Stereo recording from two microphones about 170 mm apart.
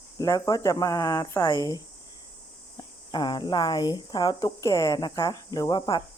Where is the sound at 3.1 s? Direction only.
25° left (ahead or behind).